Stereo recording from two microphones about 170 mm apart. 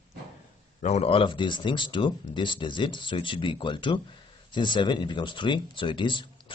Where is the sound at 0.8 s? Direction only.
40° left (ahead or behind).